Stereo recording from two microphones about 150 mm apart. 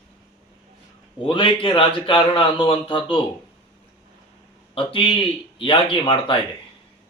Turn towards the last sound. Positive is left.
turn(degrees=35)  # may be behind; listen again after turning